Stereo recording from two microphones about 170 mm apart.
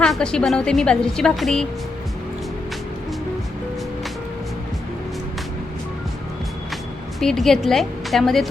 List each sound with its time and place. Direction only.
0.0 s a woman's voice: 5° left (ahead or behind)
7.2 s a woman's voice: centre (ahead or behind)